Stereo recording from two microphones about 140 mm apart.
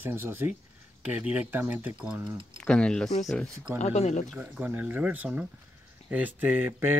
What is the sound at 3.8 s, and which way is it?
Speech, 55° left (ahead or behind).